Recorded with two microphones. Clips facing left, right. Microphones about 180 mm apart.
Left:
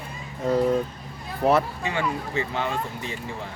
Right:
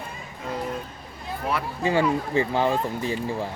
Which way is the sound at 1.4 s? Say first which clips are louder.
Left 8 dB; 35° left (ahead or behind).